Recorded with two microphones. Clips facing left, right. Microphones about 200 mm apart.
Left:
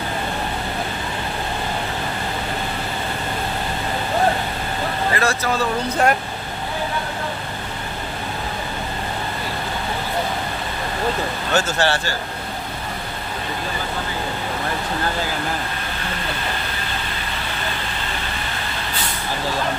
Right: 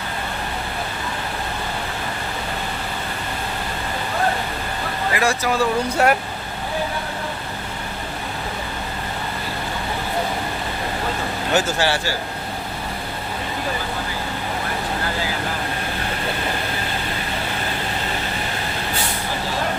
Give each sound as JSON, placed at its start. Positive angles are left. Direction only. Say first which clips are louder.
{"t": 5.1, "sound": "speech", "louder": "right 3 dB", "side_deg": -15}
{"t": 11.5, "sound": "speech", "louder": "even", "side_deg": -10}